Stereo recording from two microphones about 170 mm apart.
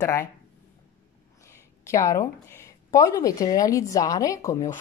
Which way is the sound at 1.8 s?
20° left (ahead or behind).